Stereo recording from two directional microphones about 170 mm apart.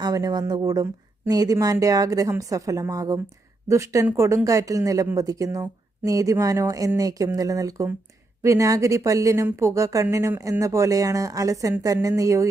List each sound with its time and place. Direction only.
0.0 s speech: 20° right (ahead or behind)